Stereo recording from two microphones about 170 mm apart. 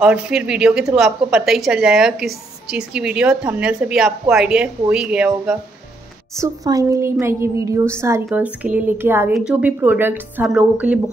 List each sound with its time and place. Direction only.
0.0 s a woman's voice: 5° right (ahead or behind)
6.3 s a woman's voice: 20° right (ahead or behind)